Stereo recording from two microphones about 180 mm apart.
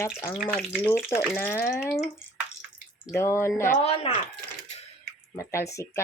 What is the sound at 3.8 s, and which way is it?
Speech, 35° left (ahead or behind).